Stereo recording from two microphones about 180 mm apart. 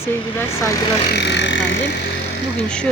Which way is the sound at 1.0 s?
70° left (ahead or behind).